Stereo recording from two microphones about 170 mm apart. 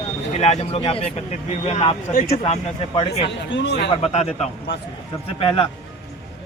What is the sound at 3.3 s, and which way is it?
Speech, 90° left.